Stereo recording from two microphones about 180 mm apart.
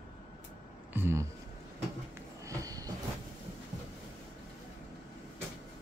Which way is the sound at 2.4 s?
20° right (ahead or behind).